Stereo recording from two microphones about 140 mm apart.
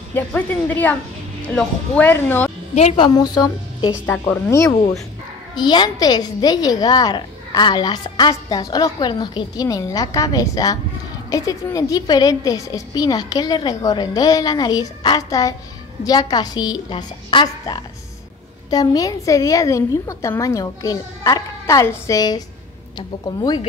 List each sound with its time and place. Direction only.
0.1 s a woman's voice: 10° left (ahead or behind)
2.7 s a woman's voice: 50° left (ahead or behind)
3.0 s a woman's voice: 30° left (ahead or behind)
4.0 s a woman's voice: 10° left (ahead or behind)
5.6 s a woman's voice: 30° left (ahead or behind)